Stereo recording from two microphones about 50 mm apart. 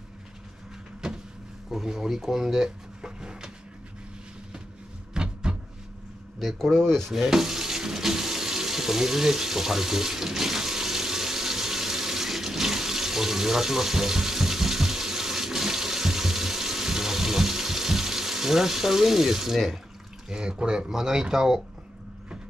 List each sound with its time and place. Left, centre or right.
1.0 s vehicle: centre
1.7 s speech: centre
5.1 s cupboard open or close: centre
6.6 s speech: centre
7.1 s water tap: centre
20.2 s speech: centre